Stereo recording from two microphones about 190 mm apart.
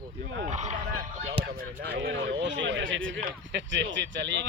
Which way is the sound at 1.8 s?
60° right (ahead or behind).